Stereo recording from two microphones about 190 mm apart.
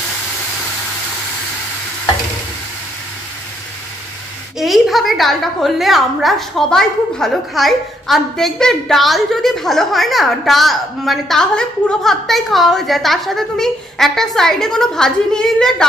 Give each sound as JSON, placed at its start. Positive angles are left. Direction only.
{"t": 4.6, "sound": "a woman's voice", "side_deg": 0}